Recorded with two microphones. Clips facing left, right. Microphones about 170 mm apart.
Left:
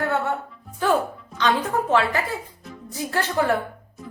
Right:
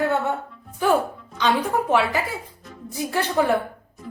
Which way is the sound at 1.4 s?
10° right (ahead or behind).